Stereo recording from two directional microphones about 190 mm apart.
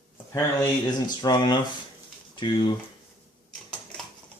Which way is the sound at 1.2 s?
20° left (ahead or behind).